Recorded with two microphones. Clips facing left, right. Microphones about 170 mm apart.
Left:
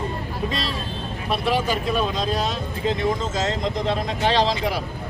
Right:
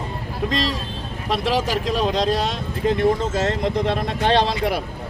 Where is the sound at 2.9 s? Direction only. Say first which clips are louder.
Right 6 dB; 55° right (ahead or behind).